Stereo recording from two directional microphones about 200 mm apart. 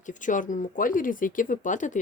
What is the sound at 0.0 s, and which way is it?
Speech, 40° left (ahead or behind).